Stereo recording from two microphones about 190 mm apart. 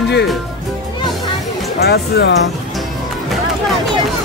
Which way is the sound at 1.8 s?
55° left (ahead or behind).